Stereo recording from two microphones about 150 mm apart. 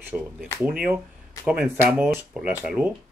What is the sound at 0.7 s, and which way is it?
Speech, 10° right (ahead or behind).